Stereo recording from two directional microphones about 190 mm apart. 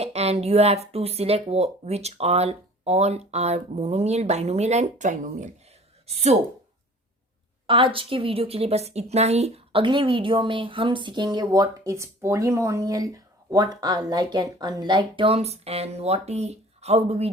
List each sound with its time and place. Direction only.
0.0 s speech: 35° right (ahead or behind)
7.7 s a woman's voice: 25° right (ahead or behind)